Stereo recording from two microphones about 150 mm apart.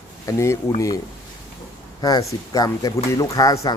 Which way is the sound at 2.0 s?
25° left (ahead or behind).